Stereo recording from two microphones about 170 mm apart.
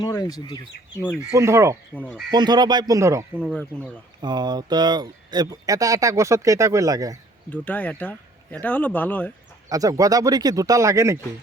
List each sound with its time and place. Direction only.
0.0 s speech: 20° left (ahead or behind)
1.3 s speech: 15° right (ahead or behind)
2.0 s speech: 10° left (ahead or behind)
2.3 s speech: 25° right (ahead or behind)
3.3 s speech: 5° left (ahead or behind)
4.2 s speech: 25° right (ahead or behind)
7.5 s speech: 10° left (ahead or behind)
9.6 s speech: 20° right (ahead or behind)